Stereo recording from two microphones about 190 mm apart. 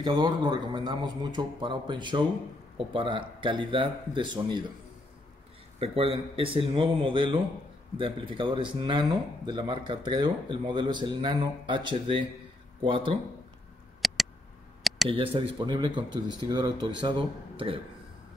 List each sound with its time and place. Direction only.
0.0 s speech: 20° right (ahead or behind)
5.8 s speech: 30° right (ahead or behind)
14.0 s a sound: centre (ahead or behind)
15.0 s speech: 30° right (ahead or behind)